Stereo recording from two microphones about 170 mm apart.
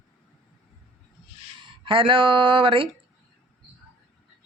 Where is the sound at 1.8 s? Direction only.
30° right (ahead or behind).